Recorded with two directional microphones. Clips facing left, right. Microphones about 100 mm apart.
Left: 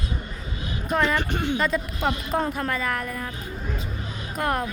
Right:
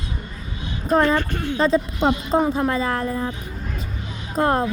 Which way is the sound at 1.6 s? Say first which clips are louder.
Right 6 dB; 30° right (ahead or behind).